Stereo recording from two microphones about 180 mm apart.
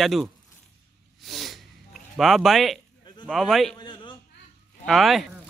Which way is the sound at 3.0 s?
25° left (ahead or behind).